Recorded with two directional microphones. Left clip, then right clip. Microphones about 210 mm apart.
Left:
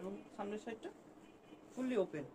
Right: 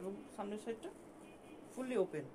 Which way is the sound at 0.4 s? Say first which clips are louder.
Left 1 dB; 20° right (ahead or behind).